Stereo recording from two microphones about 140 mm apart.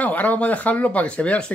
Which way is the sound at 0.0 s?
10° left (ahead or behind).